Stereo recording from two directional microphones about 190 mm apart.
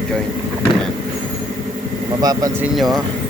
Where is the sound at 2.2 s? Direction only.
20° right (ahead or behind).